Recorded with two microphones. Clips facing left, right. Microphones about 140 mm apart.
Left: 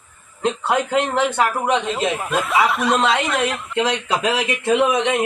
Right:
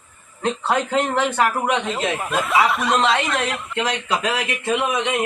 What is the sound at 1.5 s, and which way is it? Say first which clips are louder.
Speech: left 2 dB; centre (ahead or behind).